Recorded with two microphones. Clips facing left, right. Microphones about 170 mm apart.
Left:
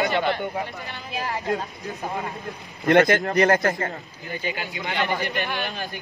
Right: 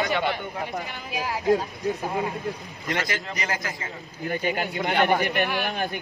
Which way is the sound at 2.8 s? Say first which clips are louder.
Left 12 dB; 60° left (ahead or behind).